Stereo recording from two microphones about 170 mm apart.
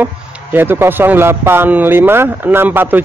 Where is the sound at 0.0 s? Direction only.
10° right (ahead or behind).